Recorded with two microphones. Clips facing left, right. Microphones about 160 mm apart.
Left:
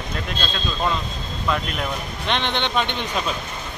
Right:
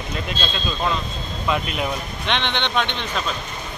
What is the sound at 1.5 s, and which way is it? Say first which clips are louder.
Speech: right 1 dB; 5° right (ahead or behind).